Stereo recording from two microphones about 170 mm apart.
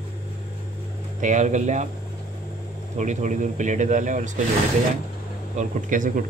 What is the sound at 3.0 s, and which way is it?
Speech, 45° right (ahead or behind).